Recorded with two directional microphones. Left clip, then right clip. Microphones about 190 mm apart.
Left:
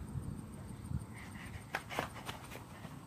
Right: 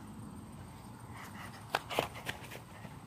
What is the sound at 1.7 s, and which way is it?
Walk, 45° right (ahead or behind).